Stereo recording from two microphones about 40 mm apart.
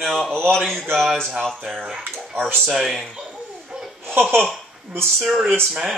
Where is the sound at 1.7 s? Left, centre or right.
Centre.